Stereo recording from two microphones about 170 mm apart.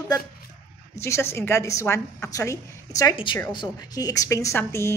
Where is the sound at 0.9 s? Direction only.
15° left (ahead or behind).